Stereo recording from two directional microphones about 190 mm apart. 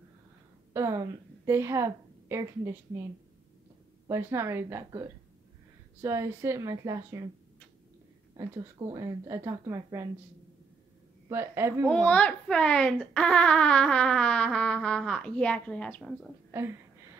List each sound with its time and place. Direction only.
0.7 s a woman's voice: 15° right (ahead or behind)
4.1 s speech: 15° right (ahead or behind)
8.4 s speech: 25° right (ahead or behind)
11.2 s speech: 10° right (ahead or behind)
12.1 s speech: 5° left (ahead or behind)